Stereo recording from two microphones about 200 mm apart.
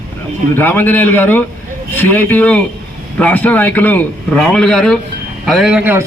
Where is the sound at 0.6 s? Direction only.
10° left (ahead or behind).